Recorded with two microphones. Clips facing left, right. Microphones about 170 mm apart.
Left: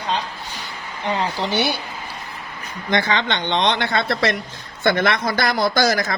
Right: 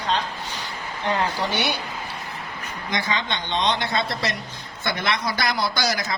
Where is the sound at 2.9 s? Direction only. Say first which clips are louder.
Left 6 dB; 70° left (ahead or behind); by 6.1 s 50° left (ahead or behind).